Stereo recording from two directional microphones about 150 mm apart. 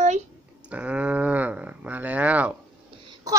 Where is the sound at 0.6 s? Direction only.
10° right (ahead or behind).